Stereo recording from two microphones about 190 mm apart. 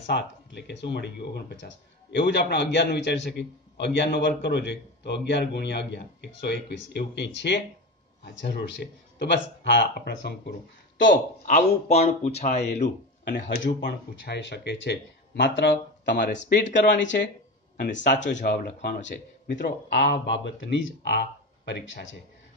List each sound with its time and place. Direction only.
0.1 s a man's voice: 60° left (ahead or behind)
11.4 s speech: 35° left (ahead or behind)
13.3 s a man's voice: 55° left (ahead or behind); by 16.2 s 70° left (ahead or behind)
16.3 s speech: 45° left (ahead or behind)
16.9 s a man's voice: 70° left (ahead or behind)